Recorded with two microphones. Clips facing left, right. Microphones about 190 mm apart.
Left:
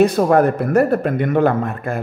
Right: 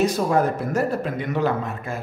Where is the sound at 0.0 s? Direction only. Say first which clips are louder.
Left 7 dB; 60° left (ahead or behind).